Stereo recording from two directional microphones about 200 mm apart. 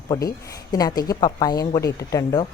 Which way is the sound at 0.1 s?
20° left (ahead or behind).